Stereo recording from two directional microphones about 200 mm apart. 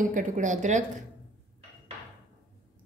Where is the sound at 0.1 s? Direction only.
40° right (ahead or behind).